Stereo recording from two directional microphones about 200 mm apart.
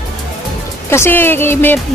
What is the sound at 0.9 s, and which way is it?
Speech, 10° left (ahead or behind).